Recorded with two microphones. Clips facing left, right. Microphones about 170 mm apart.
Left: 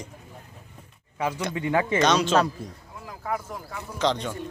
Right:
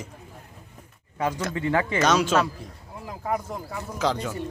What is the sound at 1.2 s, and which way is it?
Speech, centre (ahead or behind).